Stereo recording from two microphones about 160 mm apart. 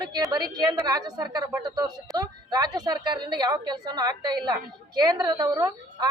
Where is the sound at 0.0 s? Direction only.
25° right (ahead or behind).